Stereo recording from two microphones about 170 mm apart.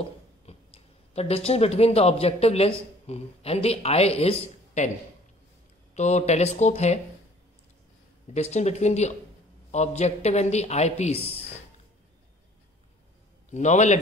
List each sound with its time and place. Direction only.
0.5 s a sound: 35° left (ahead or behind)
1.1 s a man's voice: 35° left (ahead or behind)
5.9 s a man's voice: 40° left (ahead or behind)
8.3 s a man's voice: 40° left (ahead or behind)
13.5 s a man's voice: 45° left (ahead or behind)